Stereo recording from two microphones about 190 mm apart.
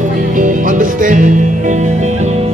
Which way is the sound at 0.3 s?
45° right (ahead or behind).